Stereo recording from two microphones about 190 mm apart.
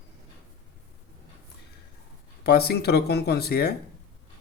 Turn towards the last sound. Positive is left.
turn(degrees=55)  # may be behind; listen again after turning